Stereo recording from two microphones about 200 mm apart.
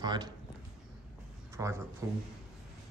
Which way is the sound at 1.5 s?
15° right (ahead or behind).